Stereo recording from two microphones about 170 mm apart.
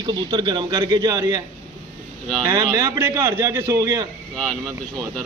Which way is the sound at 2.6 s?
25° right (ahead or behind).